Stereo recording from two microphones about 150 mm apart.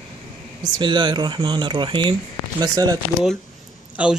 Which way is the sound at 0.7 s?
30° right (ahead or behind).